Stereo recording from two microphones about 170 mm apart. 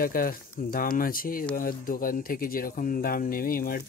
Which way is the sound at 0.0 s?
60° left (ahead or behind).